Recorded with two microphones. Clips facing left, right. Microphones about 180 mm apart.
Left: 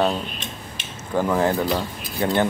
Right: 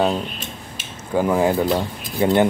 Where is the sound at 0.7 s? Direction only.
10° right (ahead or behind).